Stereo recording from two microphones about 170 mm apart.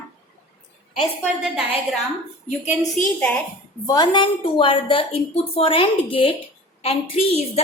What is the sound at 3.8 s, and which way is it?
A woman's voice, 25° left (ahead or behind).